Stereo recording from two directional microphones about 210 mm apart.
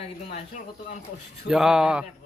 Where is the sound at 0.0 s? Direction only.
30° left (ahead or behind).